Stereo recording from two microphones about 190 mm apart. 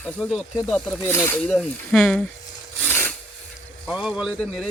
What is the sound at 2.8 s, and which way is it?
Filing, 10° left (ahead or behind).